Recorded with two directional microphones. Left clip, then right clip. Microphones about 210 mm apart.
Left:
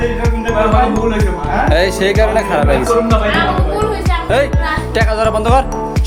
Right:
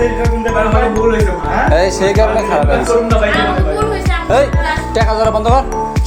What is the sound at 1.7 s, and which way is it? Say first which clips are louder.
Music: right 1 dB; 20° left (ahead or behind).